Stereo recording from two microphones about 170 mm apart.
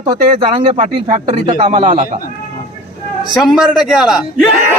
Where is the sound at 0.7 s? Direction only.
45° right (ahead or behind).